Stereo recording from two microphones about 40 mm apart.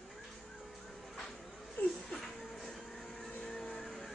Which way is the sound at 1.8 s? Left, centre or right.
Left.